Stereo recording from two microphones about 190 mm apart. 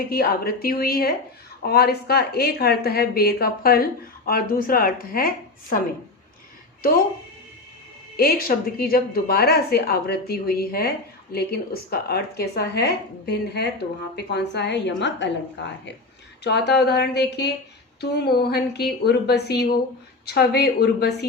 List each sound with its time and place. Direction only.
0.1 s a woman's voice: 50° left (ahead or behind)
8.1 s a woman's voice: 50° left (ahead or behind)